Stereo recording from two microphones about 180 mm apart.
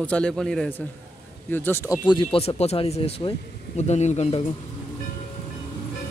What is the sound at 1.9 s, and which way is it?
Speech, 25° left (ahead or behind).